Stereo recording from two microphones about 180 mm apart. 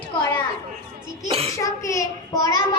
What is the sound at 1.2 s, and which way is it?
Speech, 35° right (ahead or behind).